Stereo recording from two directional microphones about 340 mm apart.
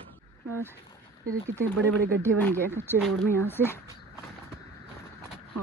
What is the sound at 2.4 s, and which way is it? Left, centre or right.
Speech, centre.